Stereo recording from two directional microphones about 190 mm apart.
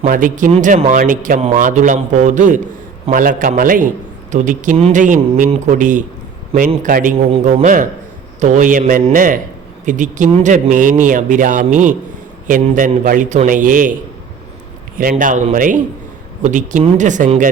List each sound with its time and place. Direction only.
0.0 s a man's voice: 45° right (ahead or behind)
7.3 s a man's voice: 30° right (ahead or behind)
15.2 s a man's voice: 40° right (ahead or behind)